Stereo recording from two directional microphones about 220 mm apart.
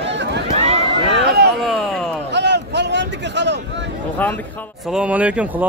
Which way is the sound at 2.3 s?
50° right (ahead or behind).